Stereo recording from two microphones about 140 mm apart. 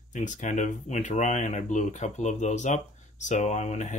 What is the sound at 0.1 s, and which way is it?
Speech, 60° left (ahead or behind).